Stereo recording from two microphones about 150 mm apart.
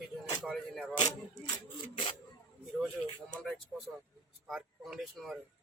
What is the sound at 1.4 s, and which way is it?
Rub, 30° left (ahead or behind).